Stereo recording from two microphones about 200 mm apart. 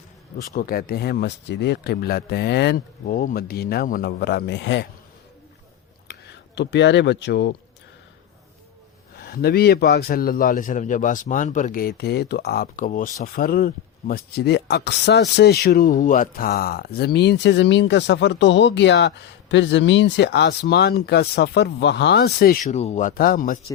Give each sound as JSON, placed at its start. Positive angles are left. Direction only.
{"t": 0.3, "sound": "a man's voice", "side_deg": 45}
{"t": 6.6, "sound": "speech", "side_deg": 60}
{"t": 9.1, "sound": "a man's voice", "side_deg": 50}
{"t": 22.7, "sound": "speech", "side_deg": 35}